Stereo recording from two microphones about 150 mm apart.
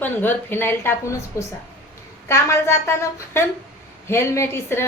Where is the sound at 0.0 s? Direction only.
15° left (ahead or behind).